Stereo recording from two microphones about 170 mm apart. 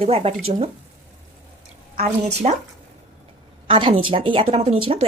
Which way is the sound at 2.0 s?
40° right (ahead or behind).